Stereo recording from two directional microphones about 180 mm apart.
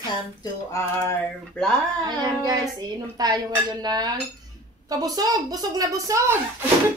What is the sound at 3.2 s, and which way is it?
A woman's voice, 20° right (ahead or behind).